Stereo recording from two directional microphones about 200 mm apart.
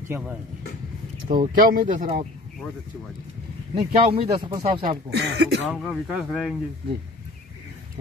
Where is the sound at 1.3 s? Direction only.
45° right (ahead or behind).